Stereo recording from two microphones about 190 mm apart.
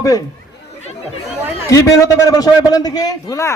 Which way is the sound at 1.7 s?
20° left (ahead or behind).